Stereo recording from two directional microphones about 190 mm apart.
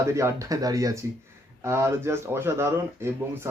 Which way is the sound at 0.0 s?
15° right (ahead or behind).